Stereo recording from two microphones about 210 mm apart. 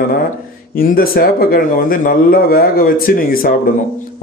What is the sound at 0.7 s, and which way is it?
A man's voice, 45° left (ahead or behind).